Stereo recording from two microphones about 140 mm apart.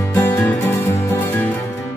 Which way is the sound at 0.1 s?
15° left (ahead or behind).